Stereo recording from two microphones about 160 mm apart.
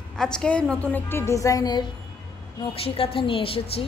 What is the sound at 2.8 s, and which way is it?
Speech, 35° left (ahead or behind).